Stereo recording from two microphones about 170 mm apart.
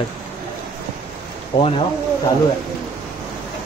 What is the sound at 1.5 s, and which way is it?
Speech, 30° left (ahead or behind).